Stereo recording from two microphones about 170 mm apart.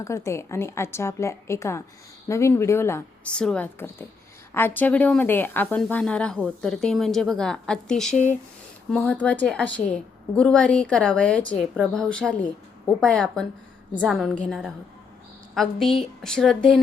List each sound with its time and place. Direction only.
0.0 s a woman's voice: 15° left (ahead or behind)